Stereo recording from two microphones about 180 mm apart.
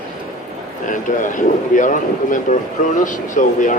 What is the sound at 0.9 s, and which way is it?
A man's voice, 45° left (ahead or behind).